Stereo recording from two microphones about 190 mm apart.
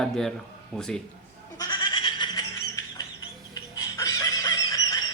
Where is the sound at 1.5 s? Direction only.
20° left (ahead or behind).